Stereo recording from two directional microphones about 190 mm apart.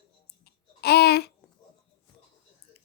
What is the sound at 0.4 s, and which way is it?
Babbling, 55° left (ahead or behind).